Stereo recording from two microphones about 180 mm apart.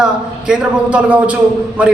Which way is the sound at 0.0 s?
5° right (ahead or behind).